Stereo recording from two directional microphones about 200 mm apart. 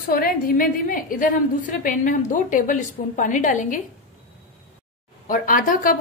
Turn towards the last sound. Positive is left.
turn(degrees=40)  # may be behind; listen again after turning